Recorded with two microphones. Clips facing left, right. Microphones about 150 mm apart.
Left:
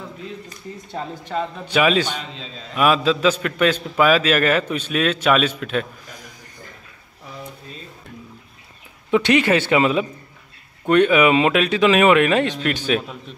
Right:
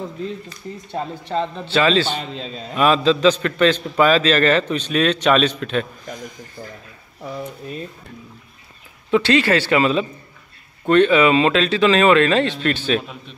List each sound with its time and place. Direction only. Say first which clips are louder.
1.4 s a man's voice: even; 10° left (ahead or behind)
9.1 s a man's voice: even; 20° left (ahead or behind)